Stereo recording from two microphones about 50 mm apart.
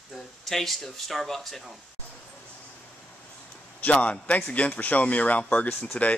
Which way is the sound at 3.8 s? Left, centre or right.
Left.